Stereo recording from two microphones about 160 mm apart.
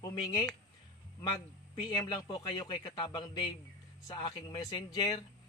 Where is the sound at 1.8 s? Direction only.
30° left (ahead or behind).